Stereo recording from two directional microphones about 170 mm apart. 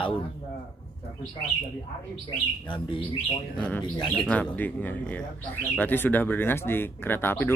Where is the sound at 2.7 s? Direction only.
30° left (ahead or behind).